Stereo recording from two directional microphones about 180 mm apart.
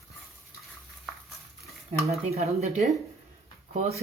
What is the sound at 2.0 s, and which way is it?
Speech, 35° right (ahead or behind).